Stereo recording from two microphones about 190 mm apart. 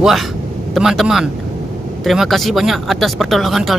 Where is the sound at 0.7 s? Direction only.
Centre (ahead or behind).